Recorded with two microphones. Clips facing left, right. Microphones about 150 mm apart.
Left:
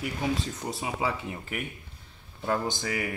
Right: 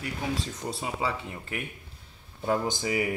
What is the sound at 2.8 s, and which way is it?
Speech, 15° right (ahead or behind).